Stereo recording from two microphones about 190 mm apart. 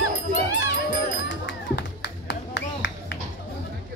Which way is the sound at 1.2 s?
65° left (ahead or behind).